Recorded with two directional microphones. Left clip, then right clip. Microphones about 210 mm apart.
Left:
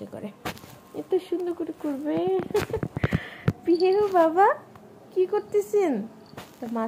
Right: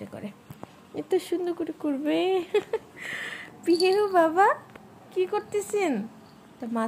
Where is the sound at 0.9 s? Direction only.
35° right (ahead or behind).